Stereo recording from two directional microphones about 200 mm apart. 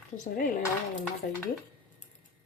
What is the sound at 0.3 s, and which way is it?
Speech, 45° left (ahead or behind).